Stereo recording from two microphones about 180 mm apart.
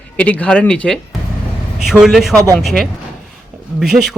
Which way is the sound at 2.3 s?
20° right (ahead or behind).